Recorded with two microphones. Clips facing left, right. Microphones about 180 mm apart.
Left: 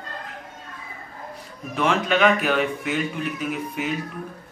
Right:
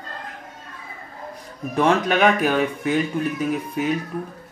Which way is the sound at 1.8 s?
45° right (ahead or behind).